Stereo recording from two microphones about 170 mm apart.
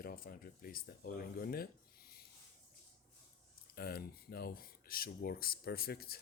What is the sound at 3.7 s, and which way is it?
Speech, 65° left (ahead or behind).